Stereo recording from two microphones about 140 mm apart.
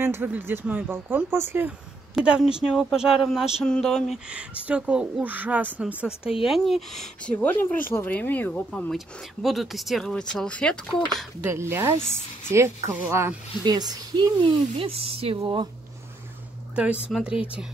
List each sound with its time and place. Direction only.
0.0 s speech: 15° right (ahead or behind)
2.1 s speech: 5° right (ahead or behind)
4.3 s speech: 10° right (ahead or behind); by 8.9 s 10° left (ahead or behind)
8.9 s speech: centre (ahead or behind)
11.4 s a woman's voice: 20° right (ahead or behind)
13.7 s speech: 30° right (ahead or behind)
16.7 s speech: 10° right (ahead or behind)